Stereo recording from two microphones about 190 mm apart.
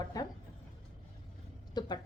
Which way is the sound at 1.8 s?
20° left (ahead or behind).